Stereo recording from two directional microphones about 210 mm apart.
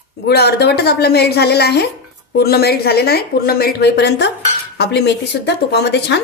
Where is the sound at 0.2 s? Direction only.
50° left (ahead or behind).